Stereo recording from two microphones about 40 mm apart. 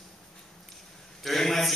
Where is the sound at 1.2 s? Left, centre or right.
Centre.